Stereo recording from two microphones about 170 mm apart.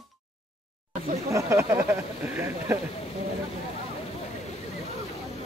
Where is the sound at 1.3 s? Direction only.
15° right (ahead or behind).